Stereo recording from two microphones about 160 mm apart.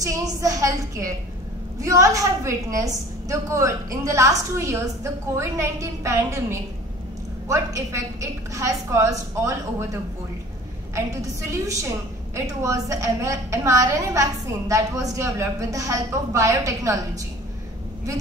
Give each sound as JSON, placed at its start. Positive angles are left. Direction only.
{"t": 0.0, "sound": "a woman's voice", "side_deg": -20}
{"t": 11.0, "sound": "a woman's voice", "side_deg": -20}